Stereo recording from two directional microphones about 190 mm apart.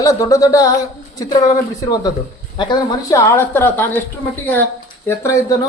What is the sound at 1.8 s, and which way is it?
A woman's voice, 20° left (ahead or behind).